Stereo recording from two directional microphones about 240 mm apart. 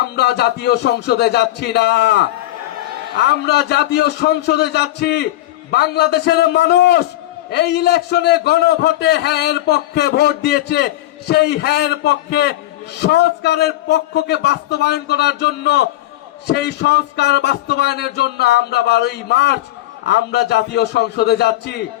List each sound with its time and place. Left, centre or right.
0.2 s a man's voice: left
3.2 s a man's voice: left